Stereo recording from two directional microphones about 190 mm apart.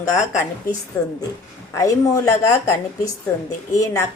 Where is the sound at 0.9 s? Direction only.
10° left (ahead or behind).